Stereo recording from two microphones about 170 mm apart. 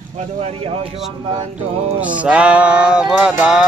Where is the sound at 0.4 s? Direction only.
35° right (ahead or behind).